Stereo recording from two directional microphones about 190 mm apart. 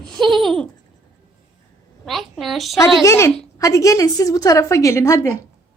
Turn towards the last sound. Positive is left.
turn(degrees=15)  # may be behind; listen again after turning